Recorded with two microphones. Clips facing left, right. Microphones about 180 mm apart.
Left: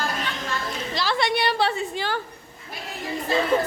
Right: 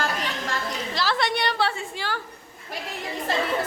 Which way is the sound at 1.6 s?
20° left (ahead or behind).